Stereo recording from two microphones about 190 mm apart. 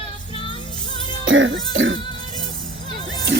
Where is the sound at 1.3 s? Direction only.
85° right.